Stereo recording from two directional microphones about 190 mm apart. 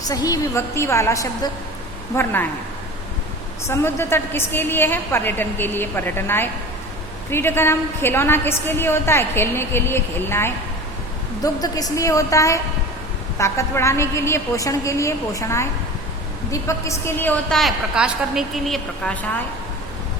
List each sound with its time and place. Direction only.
0.1 s a woman's voice: 20° left (ahead or behind)
3.7 s a woman's voice: 10° left (ahead or behind)